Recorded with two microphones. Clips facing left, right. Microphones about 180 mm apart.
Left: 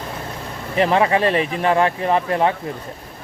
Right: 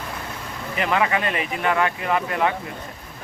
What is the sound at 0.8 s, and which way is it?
Speech, 35° left (ahead or behind).